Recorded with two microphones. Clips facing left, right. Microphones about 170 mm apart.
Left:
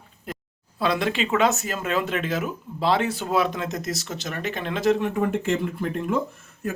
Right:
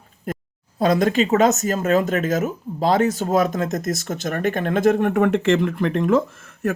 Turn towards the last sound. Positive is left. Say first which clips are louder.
# right 5 dB
turn(degrees=-90)